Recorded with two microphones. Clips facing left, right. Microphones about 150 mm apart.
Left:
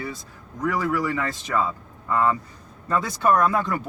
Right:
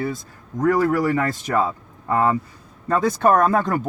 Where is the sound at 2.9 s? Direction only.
50° right (ahead or behind).